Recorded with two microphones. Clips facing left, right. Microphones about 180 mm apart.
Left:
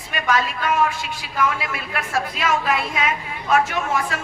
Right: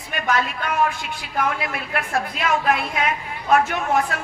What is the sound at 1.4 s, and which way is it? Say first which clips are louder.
A woman's voice: left 1 dB; 55° right (ahead or behind).